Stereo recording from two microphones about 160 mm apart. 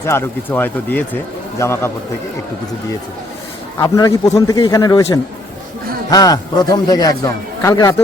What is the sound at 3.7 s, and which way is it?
A man's voice, 20° left (ahead or behind).